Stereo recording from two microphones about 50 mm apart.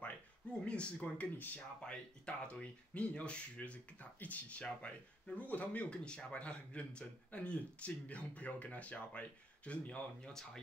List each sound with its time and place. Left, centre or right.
0.0 s speech: left